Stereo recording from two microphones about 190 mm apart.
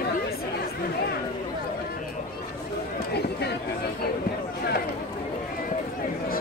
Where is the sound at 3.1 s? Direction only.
60° left (ahead or behind).